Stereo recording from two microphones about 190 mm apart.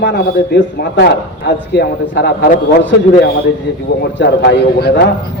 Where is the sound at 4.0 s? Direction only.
60° left (ahead or behind).